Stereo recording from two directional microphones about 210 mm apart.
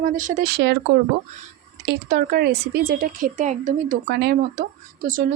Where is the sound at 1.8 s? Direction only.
45° right (ahead or behind).